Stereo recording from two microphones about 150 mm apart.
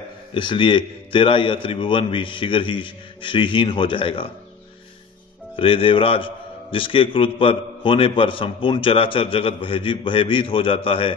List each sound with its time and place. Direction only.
0.3 s a man's voice: 35° left (ahead or behind)
5.6 s a man's voice: 35° left (ahead or behind)